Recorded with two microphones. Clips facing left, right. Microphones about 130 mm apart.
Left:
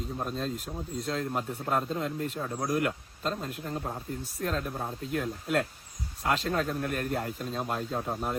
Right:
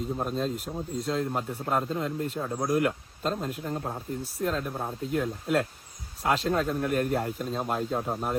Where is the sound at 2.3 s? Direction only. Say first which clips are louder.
Right 3 dB; 15° right (ahead or behind).